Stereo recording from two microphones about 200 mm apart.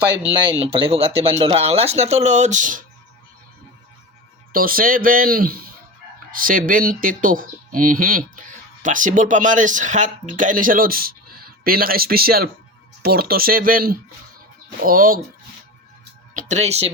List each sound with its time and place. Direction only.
0.3 s speech: 25° right (ahead or behind)
4.5 s speech: 45° right (ahead or behind)
16.3 s speech: 35° right (ahead or behind)